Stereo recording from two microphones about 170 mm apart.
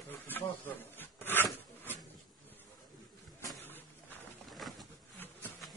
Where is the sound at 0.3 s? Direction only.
10° left (ahead or behind).